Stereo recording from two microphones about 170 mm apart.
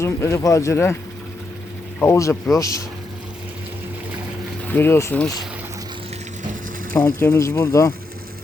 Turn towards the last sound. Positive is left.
turn(degrees=15)  # may be behind; listen again after turning